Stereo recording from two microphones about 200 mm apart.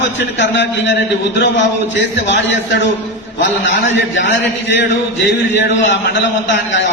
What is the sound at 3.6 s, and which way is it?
A man's voice, 65° left (ahead or behind).